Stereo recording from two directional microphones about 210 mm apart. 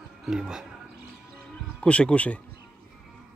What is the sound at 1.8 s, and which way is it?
Speech, 5° left (ahead or behind).